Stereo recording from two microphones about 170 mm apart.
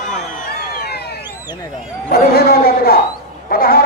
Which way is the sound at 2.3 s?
65° left (ahead or behind).